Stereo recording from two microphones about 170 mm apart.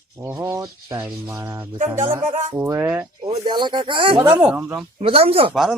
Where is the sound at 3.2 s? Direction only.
25° right (ahead or behind).